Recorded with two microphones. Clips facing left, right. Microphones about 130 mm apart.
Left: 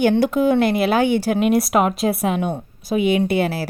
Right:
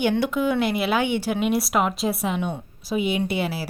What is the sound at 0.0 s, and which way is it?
Speech, 40° left (ahead or behind).